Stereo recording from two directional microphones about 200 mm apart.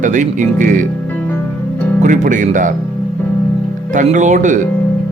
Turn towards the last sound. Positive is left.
turn(degrees=-40)  # may be behind; listen again after turning